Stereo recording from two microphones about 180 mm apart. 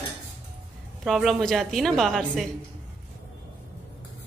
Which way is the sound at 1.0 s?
Centre (ahead or behind).